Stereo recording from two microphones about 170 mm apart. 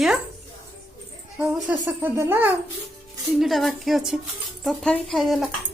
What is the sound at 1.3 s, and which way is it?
A child's voice, 10° right (ahead or behind).